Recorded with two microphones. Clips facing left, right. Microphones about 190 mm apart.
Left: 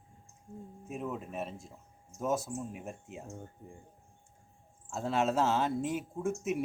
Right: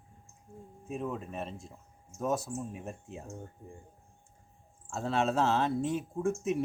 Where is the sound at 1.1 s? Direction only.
10° left (ahead or behind).